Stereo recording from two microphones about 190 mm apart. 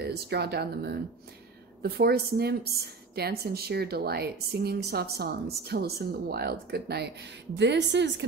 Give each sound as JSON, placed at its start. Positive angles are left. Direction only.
{"t": 0.0, "sound": "a woman's voice", "side_deg": -60}